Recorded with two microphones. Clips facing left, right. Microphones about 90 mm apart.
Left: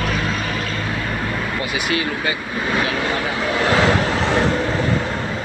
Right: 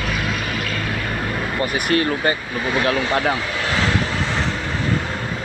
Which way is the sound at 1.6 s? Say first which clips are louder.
Right 5 dB; 45° right (ahead or behind).